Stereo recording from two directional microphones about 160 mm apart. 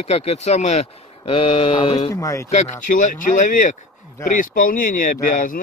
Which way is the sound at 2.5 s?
50° left (ahead or behind).